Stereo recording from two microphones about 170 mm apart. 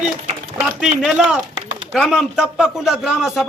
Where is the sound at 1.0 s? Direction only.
5° right (ahead or behind).